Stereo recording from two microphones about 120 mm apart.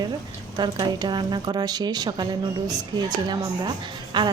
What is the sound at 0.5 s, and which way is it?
A woman's voice, 35° right (ahead or behind).